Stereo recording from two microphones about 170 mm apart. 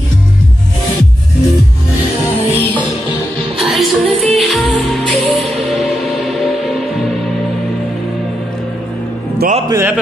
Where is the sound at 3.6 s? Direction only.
Centre (ahead or behind).